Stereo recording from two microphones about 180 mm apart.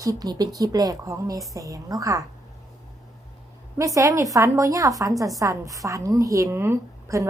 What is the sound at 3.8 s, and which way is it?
A woman's voice, 20° right (ahead or behind).